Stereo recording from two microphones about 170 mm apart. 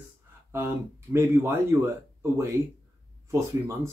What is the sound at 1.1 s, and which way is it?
Speech, 15° right (ahead or behind).